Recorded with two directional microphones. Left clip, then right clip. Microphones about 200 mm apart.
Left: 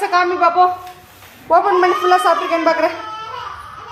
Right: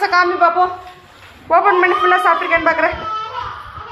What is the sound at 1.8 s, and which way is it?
A woman's voice, 10° left (ahead or behind).